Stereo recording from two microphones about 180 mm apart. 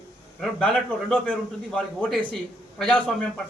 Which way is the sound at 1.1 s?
5° left (ahead or behind).